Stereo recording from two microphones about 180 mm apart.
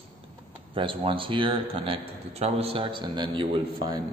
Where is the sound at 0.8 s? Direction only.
30° right (ahead or behind).